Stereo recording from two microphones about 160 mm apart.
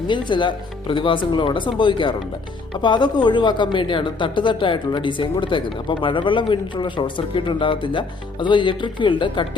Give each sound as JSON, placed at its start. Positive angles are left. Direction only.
{"t": 0.1, "sound": "a woman's voice", "side_deg": 30}